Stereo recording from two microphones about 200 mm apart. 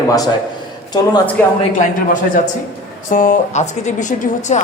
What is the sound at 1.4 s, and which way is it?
Speech, 5° left (ahead or behind).